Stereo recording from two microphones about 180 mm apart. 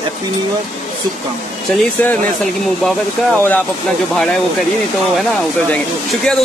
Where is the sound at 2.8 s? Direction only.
10° left (ahead or behind).